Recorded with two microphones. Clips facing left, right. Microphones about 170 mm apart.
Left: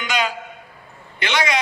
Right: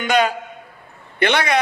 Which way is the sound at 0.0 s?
55° right (ahead or behind).